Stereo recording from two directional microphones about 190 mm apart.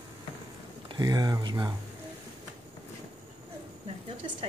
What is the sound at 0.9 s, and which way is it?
Speech, 20° right (ahead or behind).